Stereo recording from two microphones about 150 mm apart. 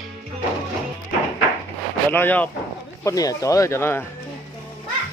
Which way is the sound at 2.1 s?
10° left (ahead or behind).